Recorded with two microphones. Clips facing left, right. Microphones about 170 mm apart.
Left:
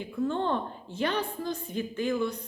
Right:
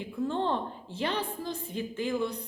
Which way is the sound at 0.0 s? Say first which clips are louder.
Left 1 dB; 25° right (ahead or behind).